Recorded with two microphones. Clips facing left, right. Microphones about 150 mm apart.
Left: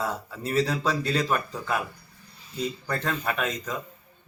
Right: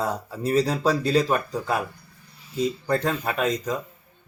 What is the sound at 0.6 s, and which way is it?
Speech, 35° right (ahead or behind).